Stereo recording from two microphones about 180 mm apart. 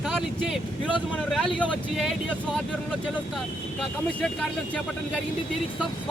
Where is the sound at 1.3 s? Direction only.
Centre (ahead or behind).